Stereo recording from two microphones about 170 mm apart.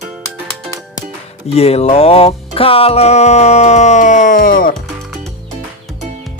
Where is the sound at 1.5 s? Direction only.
35° left (ahead or behind); by 4.7 s 55° left (ahead or behind).